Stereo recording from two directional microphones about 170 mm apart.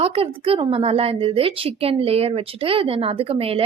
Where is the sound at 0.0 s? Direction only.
35° right (ahead or behind).